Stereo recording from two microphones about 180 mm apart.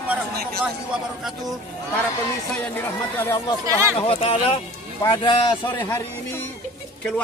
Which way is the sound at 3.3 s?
25° left (ahead or behind).